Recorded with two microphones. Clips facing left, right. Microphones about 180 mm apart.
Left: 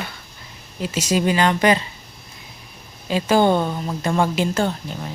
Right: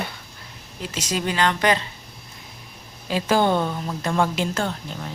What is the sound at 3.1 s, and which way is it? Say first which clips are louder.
A woman's voice: left 3 dB; centre (ahead or behind).